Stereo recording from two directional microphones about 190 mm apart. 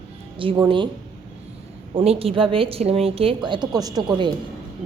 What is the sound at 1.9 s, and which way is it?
A woman's voice, 30° right (ahead or behind).